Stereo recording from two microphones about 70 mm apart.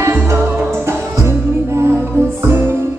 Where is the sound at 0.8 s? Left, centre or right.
Right.